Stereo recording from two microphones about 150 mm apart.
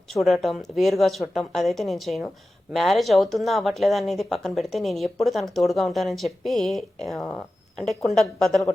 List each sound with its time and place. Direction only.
0.1 s speech: centre (ahead or behind)